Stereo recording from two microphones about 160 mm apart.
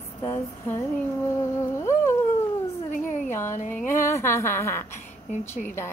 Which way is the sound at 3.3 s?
15° left (ahead or behind).